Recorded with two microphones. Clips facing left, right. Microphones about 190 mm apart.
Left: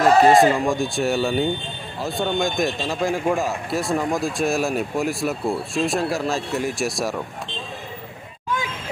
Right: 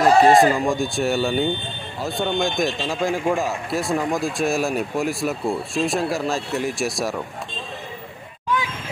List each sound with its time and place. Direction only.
0.0 s speech: centre (ahead or behind)